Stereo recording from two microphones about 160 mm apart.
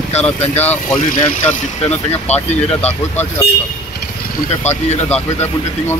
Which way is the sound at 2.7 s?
10° left (ahead or behind).